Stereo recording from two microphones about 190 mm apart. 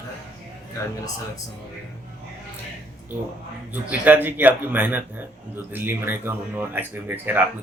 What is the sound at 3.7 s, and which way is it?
Speech, 10° right (ahead or behind).